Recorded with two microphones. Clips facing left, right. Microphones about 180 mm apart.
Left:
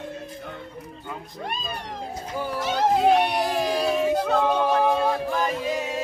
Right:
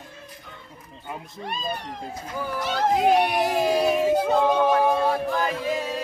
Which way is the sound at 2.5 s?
20° left (ahead or behind).